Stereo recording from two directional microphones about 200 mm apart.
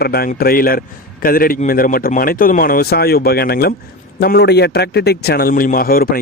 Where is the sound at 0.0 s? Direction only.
50° left (ahead or behind).